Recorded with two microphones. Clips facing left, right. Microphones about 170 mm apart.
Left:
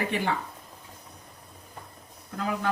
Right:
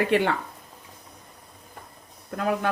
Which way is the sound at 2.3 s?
60° right (ahead or behind).